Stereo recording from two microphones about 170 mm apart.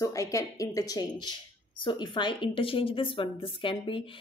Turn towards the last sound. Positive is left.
turn(degrees=30)  # may be behind; listen again after turning